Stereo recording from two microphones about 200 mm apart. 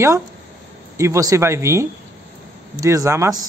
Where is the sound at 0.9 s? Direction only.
15° right (ahead or behind).